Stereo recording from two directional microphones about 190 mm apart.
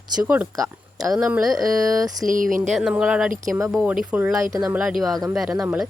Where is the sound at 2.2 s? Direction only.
45° right (ahead or behind).